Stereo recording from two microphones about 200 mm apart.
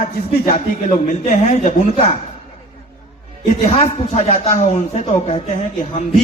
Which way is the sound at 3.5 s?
30° left (ahead or behind).